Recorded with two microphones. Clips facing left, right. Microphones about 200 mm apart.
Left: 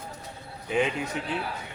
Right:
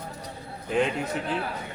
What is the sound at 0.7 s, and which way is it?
Speech, 5° left (ahead or behind).